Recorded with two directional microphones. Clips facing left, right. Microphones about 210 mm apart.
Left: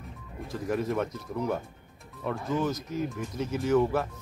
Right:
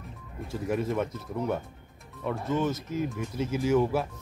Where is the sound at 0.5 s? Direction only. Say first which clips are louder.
Even; 5° right (ahead or behind).